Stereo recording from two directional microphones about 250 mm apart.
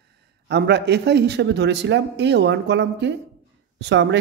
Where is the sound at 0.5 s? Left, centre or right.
Right.